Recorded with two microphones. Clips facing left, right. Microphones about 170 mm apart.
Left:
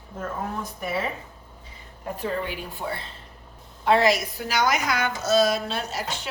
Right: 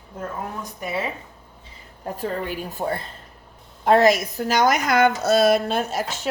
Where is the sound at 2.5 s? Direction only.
45° right (ahead or behind).